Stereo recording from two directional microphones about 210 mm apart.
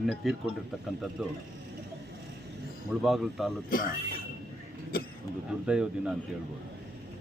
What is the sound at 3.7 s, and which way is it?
Speech, 45° left (ahead or behind).